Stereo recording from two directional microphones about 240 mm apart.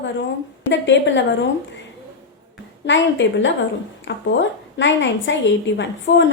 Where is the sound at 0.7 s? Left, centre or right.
Left.